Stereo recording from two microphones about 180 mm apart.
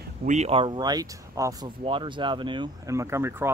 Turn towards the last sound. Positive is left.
turn(degrees=-15)  # may be behind; listen again after turning